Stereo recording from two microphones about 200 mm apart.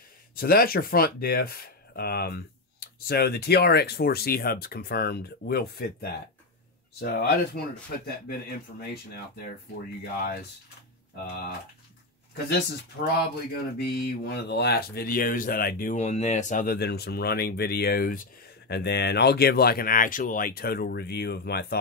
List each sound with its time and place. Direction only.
0.4 s speech: 45° left (ahead or behind)
12.4 s speech: 55° left (ahead or behind)